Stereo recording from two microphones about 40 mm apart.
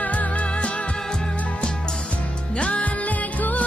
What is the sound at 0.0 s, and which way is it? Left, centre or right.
Music, left.